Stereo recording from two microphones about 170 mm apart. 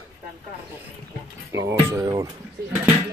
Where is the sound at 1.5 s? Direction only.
15° right (ahead or behind).